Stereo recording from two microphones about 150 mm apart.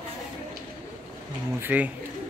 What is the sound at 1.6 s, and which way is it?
Speech, 10° right (ahead or behind).